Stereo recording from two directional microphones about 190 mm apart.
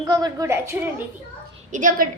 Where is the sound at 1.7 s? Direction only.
45° right (ahead or behind).